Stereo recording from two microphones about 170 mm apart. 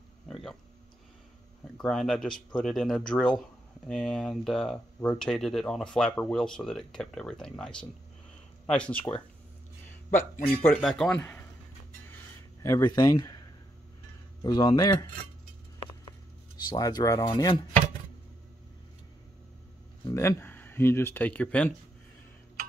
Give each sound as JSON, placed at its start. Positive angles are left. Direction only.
{"t": 0.3, "sound": "a sound", "side_deg": 0}
{"t": 1.6, "sound": "speech", "side_deg": 5}
{"t": 10.4, "sound": "speech", "side_deg": 10}
{"t": 12.6, "sound": "speech", "side_deg": 20}
{"t": 14.4, "sound": "speech", "side_deg": 25}
{"t": 16.5, "sound": "speech", "side_deg": 25}
{"t": 20.1, "sound": "speech", "side_deg": 15}